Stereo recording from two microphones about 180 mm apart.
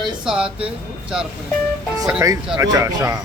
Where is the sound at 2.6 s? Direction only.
20° right (ahead or behind).